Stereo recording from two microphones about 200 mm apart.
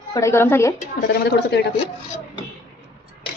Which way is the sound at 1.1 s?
55° left (ahead or behind).